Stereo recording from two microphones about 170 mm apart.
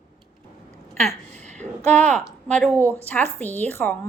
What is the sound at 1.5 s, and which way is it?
Speech, 45° right (ahead or behind).